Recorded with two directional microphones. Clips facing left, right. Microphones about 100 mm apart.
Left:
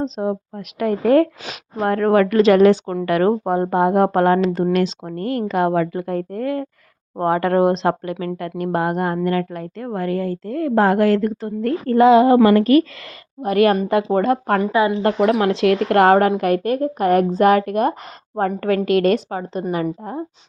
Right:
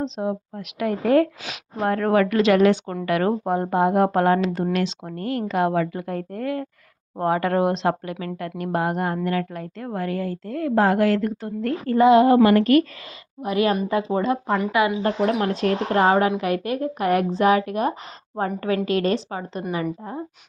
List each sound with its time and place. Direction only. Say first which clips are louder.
0.0 s speech: left 3 dB; 45° left (ahead or behind)
13.4 s speech: left 5 dB; 55° left (ahead or behind)
14.6 s speech: left 3 dB; 30° left (ahead or behind)
15.0 s speech: left 5 dB; 90° left; by 16.1 s 70° left (ahead or behind)
16.4 s speech: left 5 dB; 45° left (ahead or behind)